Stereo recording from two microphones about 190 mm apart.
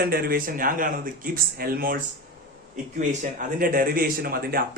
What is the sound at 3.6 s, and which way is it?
A man's voice, 50° right (ahead or behind).